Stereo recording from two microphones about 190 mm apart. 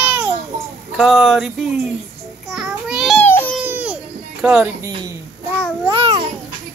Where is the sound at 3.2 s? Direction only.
10° left (ahead or behind).